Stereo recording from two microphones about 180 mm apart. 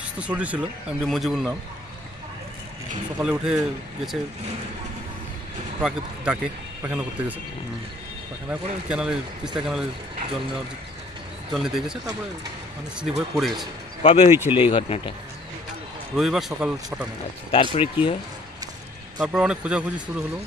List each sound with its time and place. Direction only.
0.2 s speech: 5° right (ahead or behind)
3.2 s speech: 5° right (ahead or behind)
5.8 s speech: 5° right (ahead or behind)
8.5 s speech: 5° right (ahead or behind)
11.5 s speech: centre (ahead or behind)
13.0 s speech: centre (ahead or behind)
14.0 s speech: 35° left (ahead or behind)
14.3 s speech: 15° right (ahead or behind)
14.6 s speech: 30° left (ahead or behind)
16.2 s speech: centre (ahead or behind)
17.5 s speech: 30° left (ahead or behind)
19.1 s speech: 5° right (ahead or behind)